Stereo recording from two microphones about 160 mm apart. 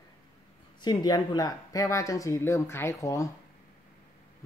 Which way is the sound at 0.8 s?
25° left (ahead or behind).